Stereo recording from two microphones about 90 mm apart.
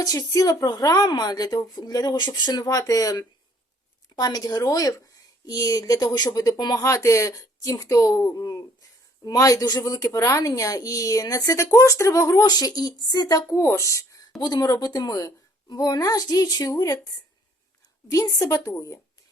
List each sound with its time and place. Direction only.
0.0 s speech: 45° left (ahead or behind)
6.8 s a woman's voice: 35° left (ahead or behind)
13.6 s a woman's voice: 30° left (ahead or behind)
14.3 s speech: 50° left (ahead or behind)
18.1 s a woman's voice: 40° left (ahead or behind)